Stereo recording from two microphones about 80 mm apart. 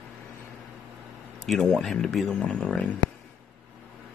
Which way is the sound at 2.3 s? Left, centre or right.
Centre.